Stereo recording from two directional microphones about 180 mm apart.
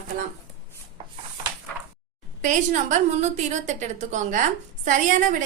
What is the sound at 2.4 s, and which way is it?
A woman's voice, 45° right (ahead or behind).